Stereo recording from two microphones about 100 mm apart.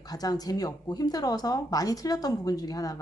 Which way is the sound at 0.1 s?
40° left (ahead or behind).